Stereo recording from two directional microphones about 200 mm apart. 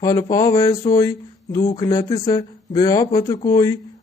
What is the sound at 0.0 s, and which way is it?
Speech, 15° left (ahead or behind).